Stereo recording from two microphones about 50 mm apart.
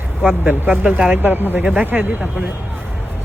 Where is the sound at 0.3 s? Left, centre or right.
Right.